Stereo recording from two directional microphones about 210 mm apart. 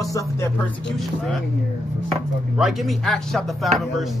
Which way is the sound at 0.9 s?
Centre (ahead or behind).